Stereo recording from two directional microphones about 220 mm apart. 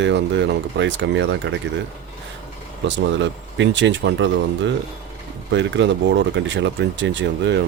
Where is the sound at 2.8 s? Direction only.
55° right (ahead or behind).